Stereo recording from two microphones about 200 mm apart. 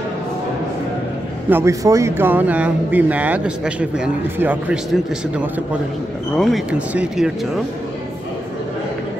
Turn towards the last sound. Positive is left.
turn(degrees=-5)  # may be behind; listen again after turning